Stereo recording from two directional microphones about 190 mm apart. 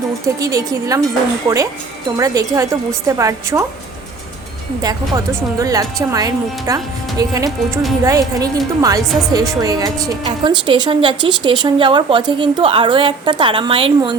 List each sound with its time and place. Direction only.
0.3 s speech: 15° right (ahead or behind)
2.1 s speech: 15° right (ahead or behind)
4.8 s a woman's voice: 20° right (ahead or behind)